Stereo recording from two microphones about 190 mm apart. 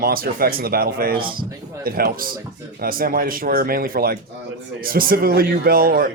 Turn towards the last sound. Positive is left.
turn(degrees=-50)  # may be behind; listen again after turning